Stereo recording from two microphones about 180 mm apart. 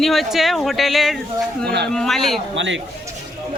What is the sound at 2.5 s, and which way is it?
Speech, 90° right.